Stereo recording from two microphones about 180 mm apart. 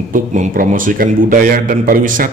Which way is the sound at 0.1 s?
45° right (ahead or behind).